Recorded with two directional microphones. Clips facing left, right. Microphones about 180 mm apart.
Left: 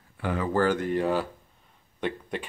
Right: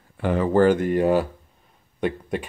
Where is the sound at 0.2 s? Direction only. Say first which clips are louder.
Right 7 dB; 25° right (ahead or behind).